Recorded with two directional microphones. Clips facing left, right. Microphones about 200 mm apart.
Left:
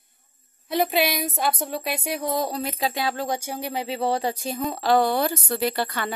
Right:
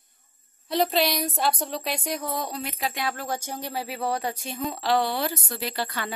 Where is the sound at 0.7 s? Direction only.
5° left (ahead or behind).